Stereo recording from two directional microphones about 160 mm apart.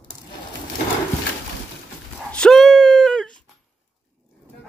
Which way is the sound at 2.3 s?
5° left (ahead or behind).